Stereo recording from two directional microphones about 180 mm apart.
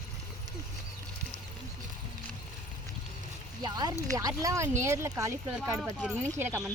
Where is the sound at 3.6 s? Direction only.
25° right (ahead or behind).